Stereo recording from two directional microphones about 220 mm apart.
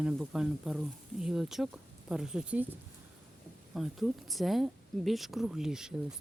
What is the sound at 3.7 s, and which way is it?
A woman's voice, centre (ahead or behind).